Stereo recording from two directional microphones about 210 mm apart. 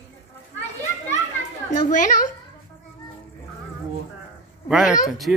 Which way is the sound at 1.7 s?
35° left (ahead or behind).